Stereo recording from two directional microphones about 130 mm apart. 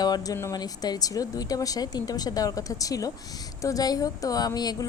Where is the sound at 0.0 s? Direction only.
30° left (ahead or behind).